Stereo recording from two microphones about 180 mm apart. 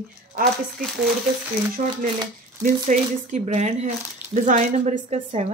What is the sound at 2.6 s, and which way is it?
Speech, 45° right (ahead or behind).